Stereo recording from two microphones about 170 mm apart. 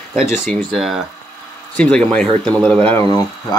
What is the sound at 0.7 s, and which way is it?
Speech, centre (ahead or behind).